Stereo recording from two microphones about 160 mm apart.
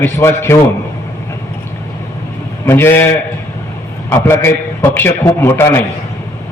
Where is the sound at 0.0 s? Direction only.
15° left (ahead or behind).